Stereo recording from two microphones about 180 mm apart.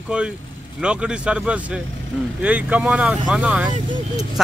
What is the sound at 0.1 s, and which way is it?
Speech, 5° right (ahead or behind).